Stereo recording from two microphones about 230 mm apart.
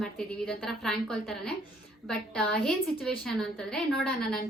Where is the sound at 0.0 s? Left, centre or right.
Centre.